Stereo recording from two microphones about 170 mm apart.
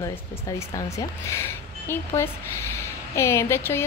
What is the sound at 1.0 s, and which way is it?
Speech, 15° left (ahead or behind).